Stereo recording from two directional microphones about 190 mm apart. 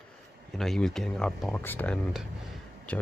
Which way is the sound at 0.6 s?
Centre (ahead or behind).